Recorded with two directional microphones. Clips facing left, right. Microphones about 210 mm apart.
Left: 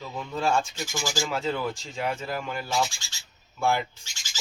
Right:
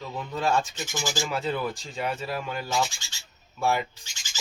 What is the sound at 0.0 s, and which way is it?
Speech, centre (ahead or behind).